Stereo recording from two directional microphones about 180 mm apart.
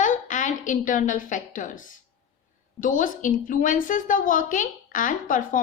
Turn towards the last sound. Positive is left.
turn(degrees=50)  # may be behind; listen again after turning